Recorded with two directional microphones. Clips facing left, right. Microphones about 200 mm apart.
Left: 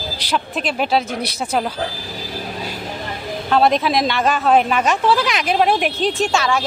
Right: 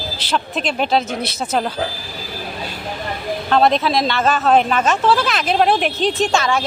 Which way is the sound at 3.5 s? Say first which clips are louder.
Even; 10° left (ahead or behind).